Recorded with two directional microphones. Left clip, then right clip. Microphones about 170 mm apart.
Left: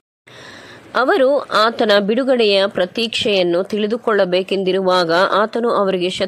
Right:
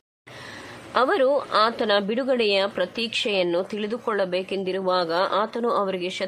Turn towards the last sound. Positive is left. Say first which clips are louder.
# left 8 dB
turn(degrees=35)  # may be behind; listen again after turning